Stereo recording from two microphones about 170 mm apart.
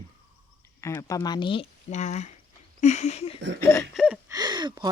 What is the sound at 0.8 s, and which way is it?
Speech, 15° left (ahead or behind).